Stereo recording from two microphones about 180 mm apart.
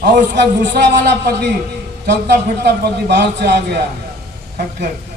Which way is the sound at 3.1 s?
70° right (ahead or behind).